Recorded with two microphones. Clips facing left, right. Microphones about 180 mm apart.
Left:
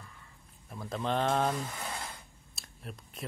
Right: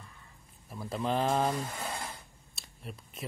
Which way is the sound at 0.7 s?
5° right (ahead or behind).